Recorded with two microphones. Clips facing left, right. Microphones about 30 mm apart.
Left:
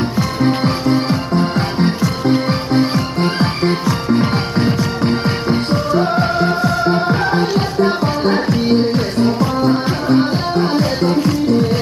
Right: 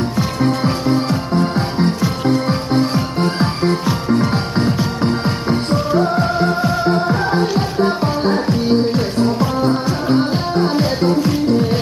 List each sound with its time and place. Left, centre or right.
0.7 s music: centre